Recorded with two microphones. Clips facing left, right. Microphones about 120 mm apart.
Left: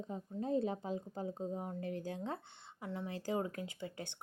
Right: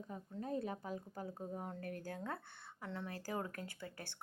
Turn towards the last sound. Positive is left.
turn(degrees=20)  # may be behind; listen again after turning